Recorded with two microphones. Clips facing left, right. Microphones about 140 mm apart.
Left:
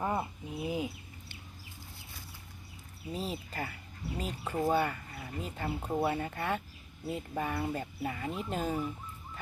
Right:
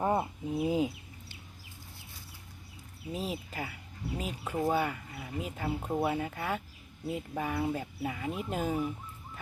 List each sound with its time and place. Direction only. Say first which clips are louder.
0.0 s bird: right 4 dB; 25° right (ahead or behind)
3.1 s speech: right 1 dB; 5° right (ahead or behind)